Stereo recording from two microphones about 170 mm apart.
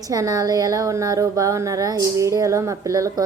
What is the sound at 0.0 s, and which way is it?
Speech, 20° right (ahead or behind).